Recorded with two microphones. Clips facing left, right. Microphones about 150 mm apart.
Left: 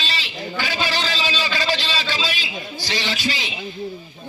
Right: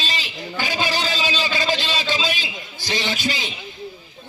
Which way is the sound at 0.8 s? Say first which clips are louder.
Right 1 dB; 15° right (ahead or behind).